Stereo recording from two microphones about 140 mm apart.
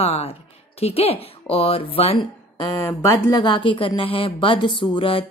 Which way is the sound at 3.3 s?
35° left (ahead or behind).